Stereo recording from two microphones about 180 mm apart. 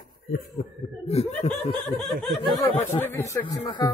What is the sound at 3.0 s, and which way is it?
Speech, 15° left (ahead or behind).